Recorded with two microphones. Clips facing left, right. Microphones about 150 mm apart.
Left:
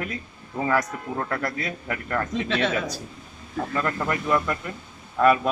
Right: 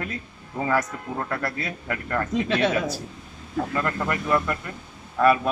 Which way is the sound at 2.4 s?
10° right (ahead or behind).